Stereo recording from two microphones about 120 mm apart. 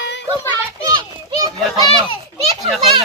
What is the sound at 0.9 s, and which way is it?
Speech, 35° right (ahead or behind).